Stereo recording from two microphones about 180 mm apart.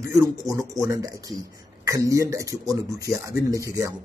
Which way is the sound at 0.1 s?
15° right (ahead or behind).